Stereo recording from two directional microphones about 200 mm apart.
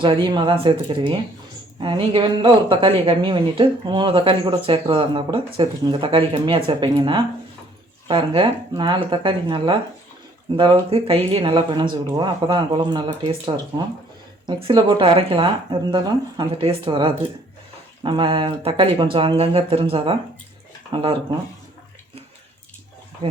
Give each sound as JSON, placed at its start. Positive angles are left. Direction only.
{"t": 0.0, "sound": "a woman's voice", "side_deg": -25}